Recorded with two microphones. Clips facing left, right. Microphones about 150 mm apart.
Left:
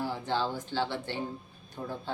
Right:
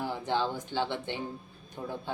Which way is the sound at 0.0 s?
15° right (ahead or behind).